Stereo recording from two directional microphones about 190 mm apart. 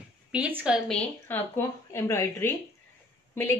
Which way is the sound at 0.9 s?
10° left (ahead or behind).